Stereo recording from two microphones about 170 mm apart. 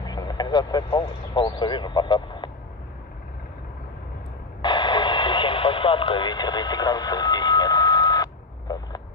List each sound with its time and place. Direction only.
0.0 s speech: 25° left (ahead or behind)
4.6 s radio: 25° left (ahead or behind)